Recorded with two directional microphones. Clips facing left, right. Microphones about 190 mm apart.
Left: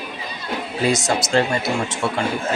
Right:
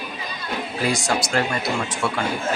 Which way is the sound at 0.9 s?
20° left (ahead or behind).